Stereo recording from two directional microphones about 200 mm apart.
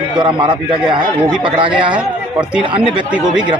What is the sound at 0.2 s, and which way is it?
A man's voice, 25° right (ahead or behind).